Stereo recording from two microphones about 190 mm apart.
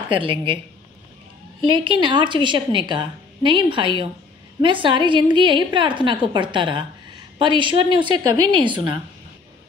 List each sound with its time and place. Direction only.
0.1 s a woman's voice: 25° right (ahead or behind)
1.7 s a woman's voice: 25° right (ahead or behind)